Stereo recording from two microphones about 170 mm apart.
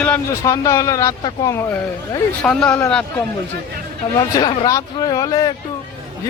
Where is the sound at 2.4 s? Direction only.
5° left (ahead or behind).